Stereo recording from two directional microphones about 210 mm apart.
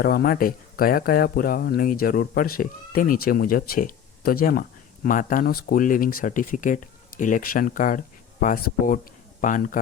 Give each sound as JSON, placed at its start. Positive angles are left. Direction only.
{"t": 0.0, "sound": "speech", "side_deg": 45}